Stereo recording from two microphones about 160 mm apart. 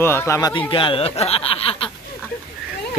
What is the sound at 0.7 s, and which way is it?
Speech, 30° left (ahead or behind).